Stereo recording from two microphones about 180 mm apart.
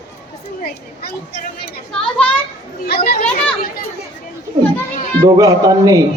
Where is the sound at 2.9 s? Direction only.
60° left (ahead or behind).